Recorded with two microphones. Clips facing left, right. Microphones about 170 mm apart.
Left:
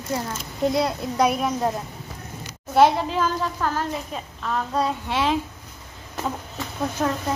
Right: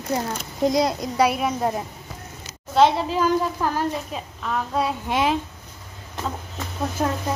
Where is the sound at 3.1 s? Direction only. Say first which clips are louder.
Right 3 dB; 10° right (ahead or behind).